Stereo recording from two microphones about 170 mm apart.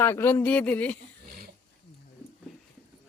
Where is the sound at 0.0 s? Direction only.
15° left (ahead or behind).